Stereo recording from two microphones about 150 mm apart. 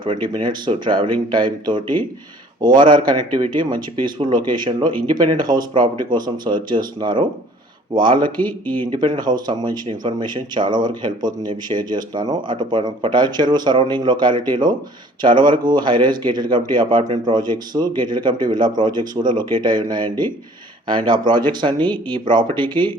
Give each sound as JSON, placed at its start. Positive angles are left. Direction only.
{"t": 0.0, "sound": "speech", "side_deg": -35}
{"t": 8.6, "sound": "speech", "side_deg": 10}
{"t": 8.9, "sound": "speech", "side_deg": -30}